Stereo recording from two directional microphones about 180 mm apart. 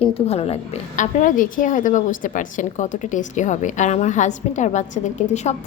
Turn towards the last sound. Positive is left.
turn(degrees=40)  # may be behind; listen again after turning